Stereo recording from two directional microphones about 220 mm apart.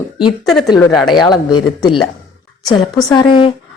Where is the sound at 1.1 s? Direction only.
20° left (ahead or behind).